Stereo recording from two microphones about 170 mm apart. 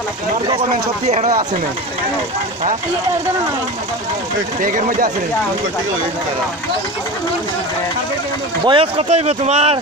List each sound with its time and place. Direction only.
1.0 s speech: 40° right (ahead or behind)
4.6 s a man's voice: 55° right (ahead or behind)
8.6 s speech: 30° right (ahead or behind)